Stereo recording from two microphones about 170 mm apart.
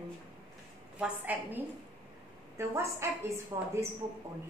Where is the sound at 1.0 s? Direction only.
10° right (ahead or behind).